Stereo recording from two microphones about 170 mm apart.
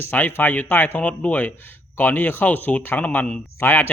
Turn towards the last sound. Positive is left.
turn(degrees=10)  # may be behind; listen again after turning